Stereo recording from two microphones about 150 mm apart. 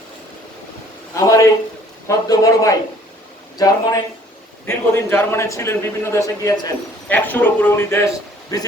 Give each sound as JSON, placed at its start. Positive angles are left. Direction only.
{"t": 1.1, "sound": "a man's voice", "side_deg": 20}
{"t": 7.1, "sound": "a man's voice", "side_deg": 10}